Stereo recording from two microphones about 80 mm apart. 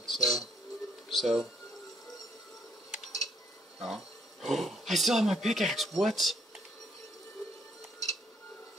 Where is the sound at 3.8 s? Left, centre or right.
Centre.